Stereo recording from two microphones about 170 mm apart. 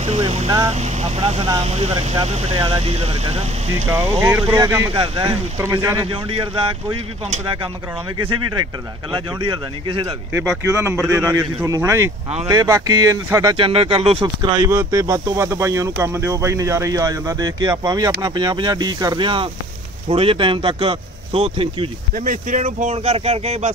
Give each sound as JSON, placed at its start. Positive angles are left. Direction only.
{"t": 0.0, "sound": "vehicle", "side_deg": -40}
{"t": 0.7, "sound": "speech", "side_deg": -40}
{"t": 4.6, "sound": "speech", "side_deg": -20}
{"t": 4.9, "sound": "speech", "side_deg": -30}
{"t": 5.6, "sound": "speech", "side_deg": -15}
{"t": 6.0, "sound": "speech", "side_deg": -30}
{"t": 10.7, "sound": "speech", "side_deg": -15}
{"t": 13.6, "sound": "speech", "side_deg": -35}
{"t": 14.2, "sound": "speech", "side_deg": -20}
{"t": 22.1, "sound": "speech", "side_deg": -50}